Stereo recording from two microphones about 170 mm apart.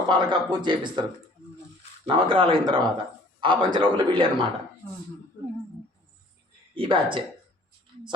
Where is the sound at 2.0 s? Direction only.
30° right (ahead or behind).